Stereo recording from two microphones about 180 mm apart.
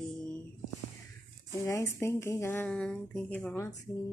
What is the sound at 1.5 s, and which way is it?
Speech, 15° left (ahead or behind).